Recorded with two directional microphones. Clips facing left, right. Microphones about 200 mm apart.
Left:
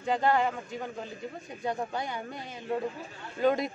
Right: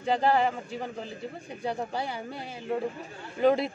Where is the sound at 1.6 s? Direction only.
35° right (ahead or behind).